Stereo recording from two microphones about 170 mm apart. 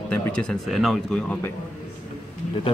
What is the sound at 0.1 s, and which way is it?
Speech, 5° left (ahead or behind).